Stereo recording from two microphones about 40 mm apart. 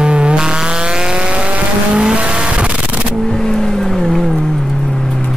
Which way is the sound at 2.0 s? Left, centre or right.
Right.